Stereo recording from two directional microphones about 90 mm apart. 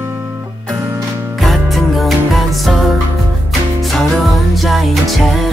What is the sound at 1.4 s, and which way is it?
Music, centre (ahead or behind).